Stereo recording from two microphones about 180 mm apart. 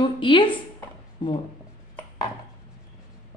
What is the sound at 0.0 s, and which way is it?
Speech, 25° left (ahead or behind).